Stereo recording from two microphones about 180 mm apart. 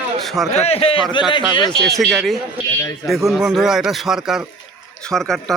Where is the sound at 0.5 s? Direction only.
35° left (ahead or behind).